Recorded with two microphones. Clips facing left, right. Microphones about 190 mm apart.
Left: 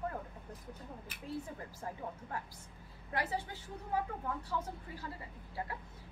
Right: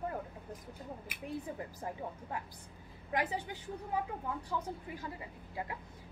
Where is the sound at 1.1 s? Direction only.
20° right (ahead or behind).